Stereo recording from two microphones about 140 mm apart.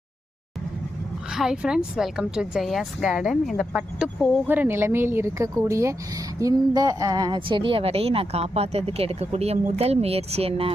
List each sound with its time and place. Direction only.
1.3 s a woman's voice: 5° right (ahead or behind)
4.4 s a woman's voice: 15° right (ahead or behind); by 10.7 s 45° right (ahead or behind)